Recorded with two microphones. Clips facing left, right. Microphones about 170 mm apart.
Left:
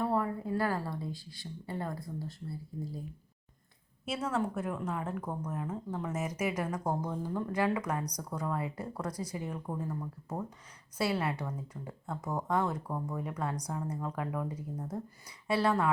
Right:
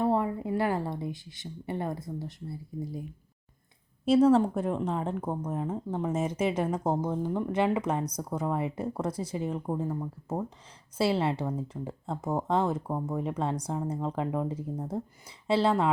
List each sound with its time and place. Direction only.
0.0 s a woman's voice: 20° right (ahead or behind)
4.0 s speech: 35° right (ahead or behind)